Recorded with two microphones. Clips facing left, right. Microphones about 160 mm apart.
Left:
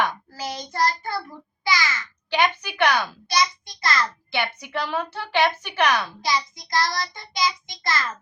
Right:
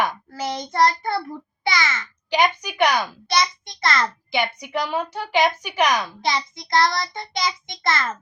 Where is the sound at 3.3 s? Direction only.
60° right (ahead or behind).